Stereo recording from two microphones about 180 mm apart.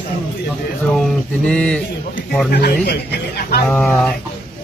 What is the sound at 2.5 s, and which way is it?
Speech, 65° left (ahead or behind).